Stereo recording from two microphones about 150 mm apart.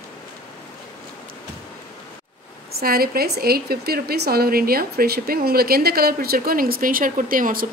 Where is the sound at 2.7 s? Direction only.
90° right; by 7.7 s 70° right (ahead or behind).